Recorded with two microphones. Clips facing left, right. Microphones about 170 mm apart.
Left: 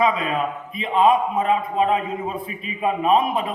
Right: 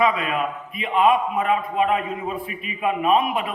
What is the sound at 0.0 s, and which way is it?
A man's voice, 30° left (ahead or behind).